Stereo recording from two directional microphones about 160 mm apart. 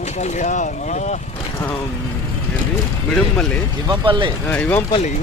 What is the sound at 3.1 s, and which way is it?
Speech, 5° left (ahead or behind).